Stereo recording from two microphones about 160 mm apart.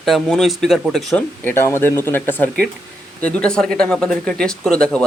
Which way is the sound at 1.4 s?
15° left (ahead or behind).